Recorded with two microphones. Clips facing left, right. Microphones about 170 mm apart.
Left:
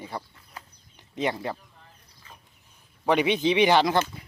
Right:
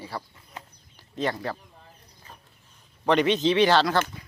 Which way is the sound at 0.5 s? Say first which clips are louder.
Right 3 dB; 25° right (ahead or behind).